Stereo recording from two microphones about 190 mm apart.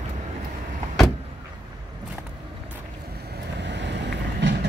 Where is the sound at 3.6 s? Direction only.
65° right (ahead or behind).